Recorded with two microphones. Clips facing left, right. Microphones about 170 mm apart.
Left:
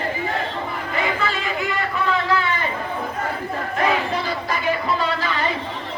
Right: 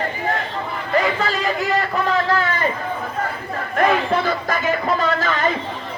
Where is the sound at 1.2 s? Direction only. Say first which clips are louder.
Right 3 dB; 40° right (ahead or behind).